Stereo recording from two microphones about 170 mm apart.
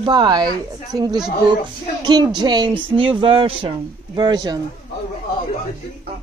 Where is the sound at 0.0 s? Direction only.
25° right (ahead or behind).